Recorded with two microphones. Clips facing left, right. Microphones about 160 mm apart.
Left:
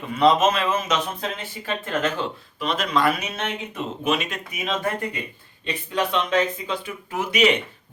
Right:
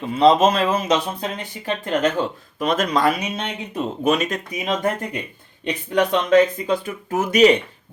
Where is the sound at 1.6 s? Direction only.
15° right (ahead or behind).